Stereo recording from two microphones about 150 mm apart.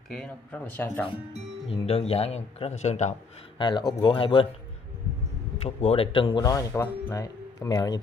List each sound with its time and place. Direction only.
0.1 s speech: 5° left (ahead or behind)
1.7 s speech: 40° left (ahead or behind)
3.5 s speech: 30° left (ahead or behind)
5.6 s speech: 45° left (ahead or behind); by 8.0 s 25° left (ahead or behind)